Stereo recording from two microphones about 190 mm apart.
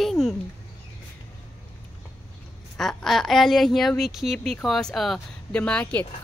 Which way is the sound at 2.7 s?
Centre (ahead or behind).